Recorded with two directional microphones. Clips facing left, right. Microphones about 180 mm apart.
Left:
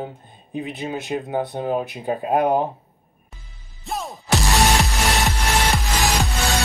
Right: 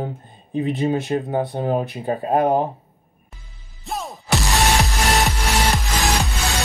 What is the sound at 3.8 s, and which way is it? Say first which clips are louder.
Music: even; centre (ahead or behind).